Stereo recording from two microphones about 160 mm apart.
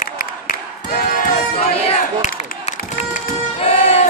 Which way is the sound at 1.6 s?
45° left (ahead or behind).